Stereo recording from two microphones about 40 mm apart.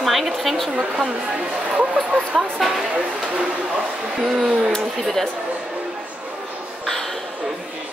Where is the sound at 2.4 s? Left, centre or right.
Centre.